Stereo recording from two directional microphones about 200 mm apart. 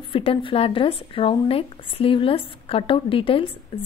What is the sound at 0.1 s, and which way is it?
Speech, 25° left (ahead or behind).